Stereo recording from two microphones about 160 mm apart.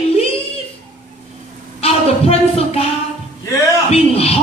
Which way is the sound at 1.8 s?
40° left (ahead or behind).